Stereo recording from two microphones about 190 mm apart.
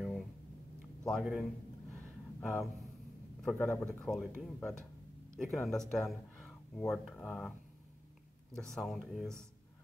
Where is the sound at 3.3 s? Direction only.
5° left (ahead or behind).